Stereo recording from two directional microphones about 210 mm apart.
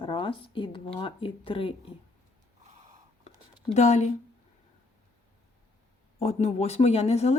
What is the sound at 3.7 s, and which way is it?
Speech, 35° left (ahead or behind).